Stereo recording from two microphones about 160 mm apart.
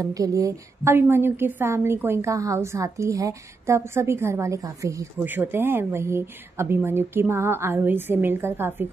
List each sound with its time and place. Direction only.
0.0 s a woman's voice: 20° right (ahead or behind)